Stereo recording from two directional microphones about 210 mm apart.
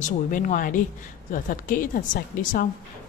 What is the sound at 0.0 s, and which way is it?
A woman's voice, 40° left (ahead or behind).